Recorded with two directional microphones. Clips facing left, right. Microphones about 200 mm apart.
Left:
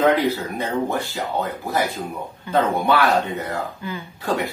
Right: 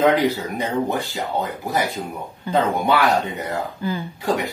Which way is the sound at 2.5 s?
35° right (ahead or behind).